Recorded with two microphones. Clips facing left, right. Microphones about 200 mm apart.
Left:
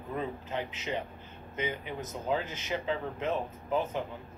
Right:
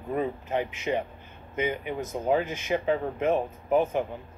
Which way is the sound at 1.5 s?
15° right (ahead or behind).